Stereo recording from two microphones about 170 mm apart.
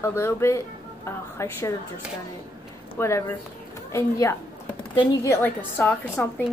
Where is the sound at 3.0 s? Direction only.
15° left (ahead or behind).